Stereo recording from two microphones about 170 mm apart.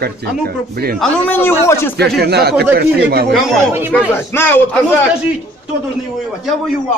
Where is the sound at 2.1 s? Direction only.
70° right (ahead or behind).